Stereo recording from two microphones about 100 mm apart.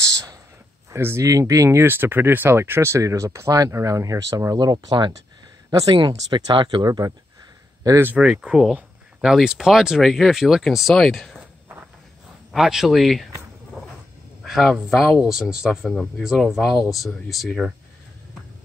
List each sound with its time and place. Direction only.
0.9 s speech: 25° right (ahead or behind); by 6.9 s 55° right (ahead or behind)
6.9 s speech: 40° right (ahead or behind)
8.2 s speech: 5° right (ahead or behind)
12.5 s speech: 5° right (ahead or behind)
14.4 s speech: centre (ahead or behind)